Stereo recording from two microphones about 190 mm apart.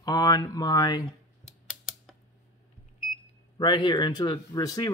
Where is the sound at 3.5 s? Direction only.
25° left (ahead or behind).